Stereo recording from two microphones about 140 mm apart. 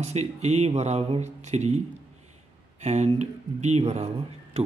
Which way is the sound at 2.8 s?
55° right (ahead or behind).